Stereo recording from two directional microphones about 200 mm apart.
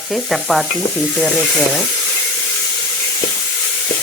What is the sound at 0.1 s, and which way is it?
Sizzle, centre (ahead or behind).